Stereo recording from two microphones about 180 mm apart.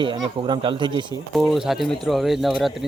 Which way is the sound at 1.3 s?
Centre (ahead or behind).